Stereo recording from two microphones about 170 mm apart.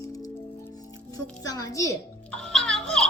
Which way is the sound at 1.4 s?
20° left (ahead or behind).